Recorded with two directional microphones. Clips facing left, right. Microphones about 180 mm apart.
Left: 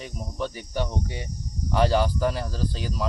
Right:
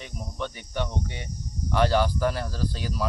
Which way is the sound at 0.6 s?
40° left (ahead or behind).